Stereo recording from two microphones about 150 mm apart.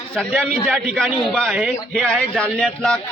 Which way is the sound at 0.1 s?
5° left (ahead or behind).